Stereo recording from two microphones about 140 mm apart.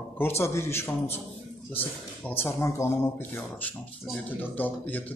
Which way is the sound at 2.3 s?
20° left (ahead or behind).